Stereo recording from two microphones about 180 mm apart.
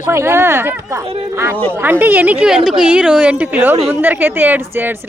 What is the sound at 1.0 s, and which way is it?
Speech, 35° right (ahead or behind).